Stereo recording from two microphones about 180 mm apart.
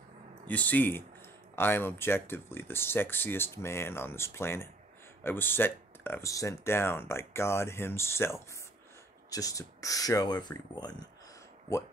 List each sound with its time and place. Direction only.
0.5 s speech: 10° left (ahead or behind)